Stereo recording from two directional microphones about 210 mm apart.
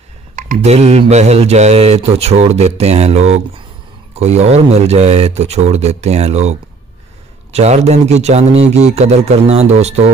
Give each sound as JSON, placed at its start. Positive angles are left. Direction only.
{"t": 0.4, "sound": "speech", "side_deg": -35}